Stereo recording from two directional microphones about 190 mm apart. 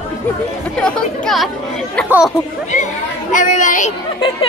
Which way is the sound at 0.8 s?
5° left (ahead or behind).